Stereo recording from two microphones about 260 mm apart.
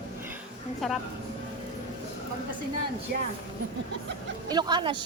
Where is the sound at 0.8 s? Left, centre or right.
Centre.